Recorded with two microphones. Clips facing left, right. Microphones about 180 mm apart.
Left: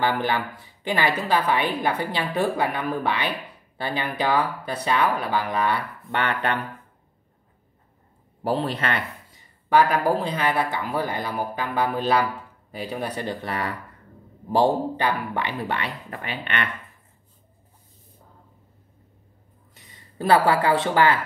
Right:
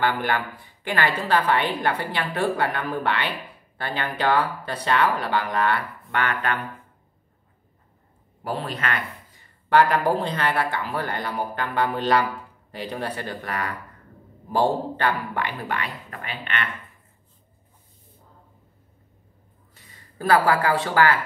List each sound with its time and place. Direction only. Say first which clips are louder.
0.8 s speech: left 1 dB; 15° left (ahead or behind)
6.1 s speech: left 1 dB; 25° left (ahead or behind)
8.5 s speech: left 4 dB; 30° left (ahead or behind)
9.7 s speech: even; 10° left (ahead or behind)
13.1 s speech: left 2 dB; 20° left (ahead or behind)
14.5 s speech: left 2 dB; 15° left (ahead or behind); by 16.6 s 35° left (ahead or behind)
19.7 s speech: left 1 dB; 20° left (ahead or behind)